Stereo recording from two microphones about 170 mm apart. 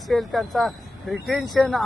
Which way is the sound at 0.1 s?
Centre (ahead or behind).